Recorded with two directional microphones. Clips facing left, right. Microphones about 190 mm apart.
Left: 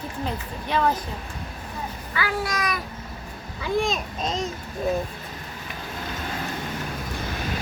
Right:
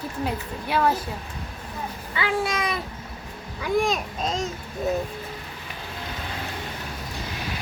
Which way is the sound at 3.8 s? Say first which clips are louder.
Right 1 dB; 10° right (ahead or behind).